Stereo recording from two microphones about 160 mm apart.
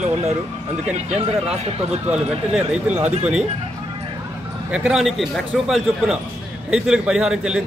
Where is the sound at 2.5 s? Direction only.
5° right (ahead or behind).